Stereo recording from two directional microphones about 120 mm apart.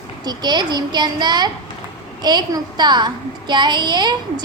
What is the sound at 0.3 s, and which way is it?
A child's voice, 35° right (ahead or behind).